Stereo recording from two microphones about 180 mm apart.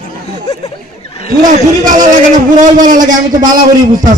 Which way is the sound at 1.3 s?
45° right (ahead or behind).